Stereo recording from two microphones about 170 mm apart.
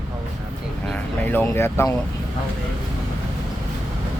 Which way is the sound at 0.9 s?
10° left (ahead or behind).